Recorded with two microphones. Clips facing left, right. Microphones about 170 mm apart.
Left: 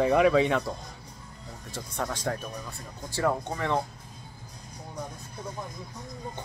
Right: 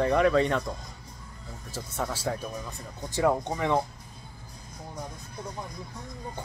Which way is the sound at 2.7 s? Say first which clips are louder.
Right 2 dB; 15° right (ahead or behind).